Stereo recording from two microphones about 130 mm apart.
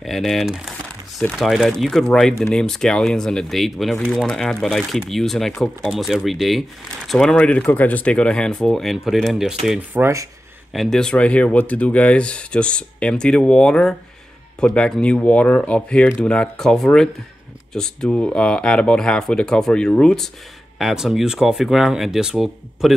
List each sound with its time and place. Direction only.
0.0 s a sound: centre (ahead or behind)
1.3 s speech: centre (ahead or behind)
9.8 s speech: 15° right (ahead or behind)
10.7 s speech: centre (ahead or behind)